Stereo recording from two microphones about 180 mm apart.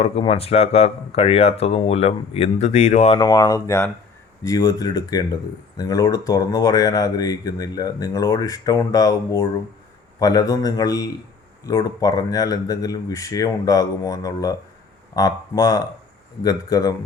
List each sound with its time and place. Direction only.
0.0 s speech: 35° left (ahead or behind)
3.2 s speech: 25° left (ahead or behind)